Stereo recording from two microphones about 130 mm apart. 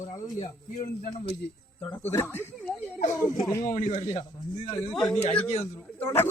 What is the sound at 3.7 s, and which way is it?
Speech, 75° left (ahead or behind).